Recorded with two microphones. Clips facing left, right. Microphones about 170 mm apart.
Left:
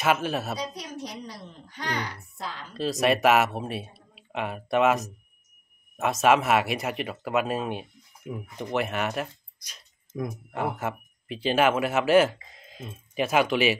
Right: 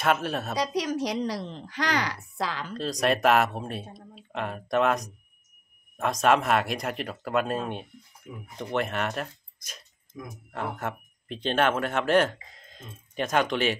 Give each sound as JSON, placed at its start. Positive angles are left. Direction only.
{"t": 0.0, "sound": "speech", "side_deg": 0}
{"t": 0.6, "sound": "a woman's voice", "side_deg": -90}
{"t": 2.8, "sound": "speech", "side_deg": 5}
{"t": 10.1, "sound": "speech", "side_deg": 65}
{"t": 10.5, "sound": "speech", "side_deg": 5}